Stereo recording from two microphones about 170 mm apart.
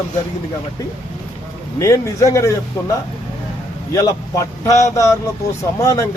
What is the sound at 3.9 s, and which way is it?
Speech, 20° left (ahead or behind).